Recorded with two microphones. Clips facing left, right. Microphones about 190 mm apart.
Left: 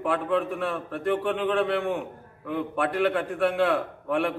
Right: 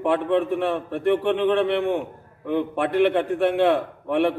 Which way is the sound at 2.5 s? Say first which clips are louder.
Right 4 dB; 25° right (ahead or behind).